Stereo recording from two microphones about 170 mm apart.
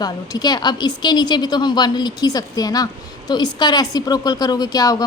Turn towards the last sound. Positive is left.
turn(degrees=20)  # may be behind; listen again after turning